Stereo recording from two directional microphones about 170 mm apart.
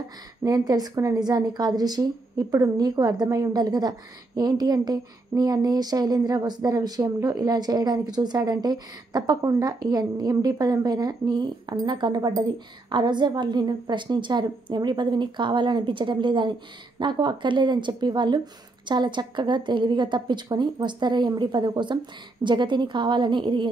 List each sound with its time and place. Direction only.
0.4 s speech: 20° right (ahead or behind)